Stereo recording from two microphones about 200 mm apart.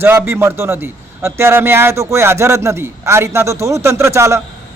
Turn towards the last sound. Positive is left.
turn(degrees=-15)  # may be behind; listen again after turning